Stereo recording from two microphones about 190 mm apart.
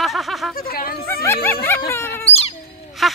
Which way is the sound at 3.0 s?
Centre (ahead or behind).